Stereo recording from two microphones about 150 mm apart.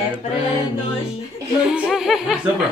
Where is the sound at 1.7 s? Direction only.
5° right (ahead or behind).